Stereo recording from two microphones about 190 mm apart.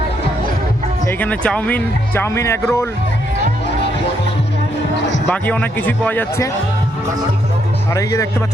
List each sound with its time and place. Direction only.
1.0 s speech: 10° left (ahead or behind)
4.9 s music: 70° left (ahead or behind)
5.3 s speech: 5° left (ahead or behind)
7.9 s speech: 15° left (ahead or behind)